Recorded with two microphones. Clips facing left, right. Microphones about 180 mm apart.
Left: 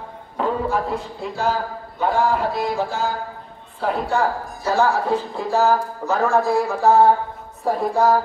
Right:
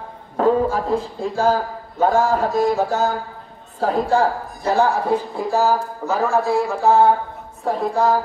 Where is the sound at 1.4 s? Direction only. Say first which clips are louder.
Right 4 dB; 45° right (ahead or behind).